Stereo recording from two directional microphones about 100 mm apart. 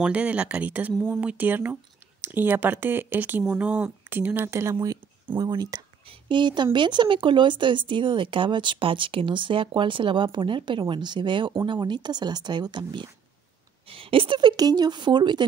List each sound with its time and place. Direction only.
0.0 s speech: 15° right (ahead or behind)
5.4 s speech: 45° right (ahead or behind)
6.0 s speech: 55° right (ahead or behind)
13.8 s speech: 65° right (ahead or behind)
14.6 s speech: 40° right (ahead or behind)